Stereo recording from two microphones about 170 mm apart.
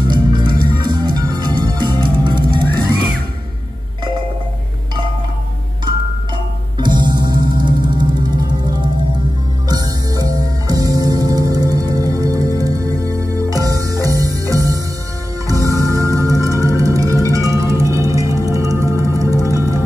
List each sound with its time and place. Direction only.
0.1 s music: 25° right (ahead or behind)
6.3 s music: 25° right (ahead or behind)
9.7 s music: 20° right (ahead or behind)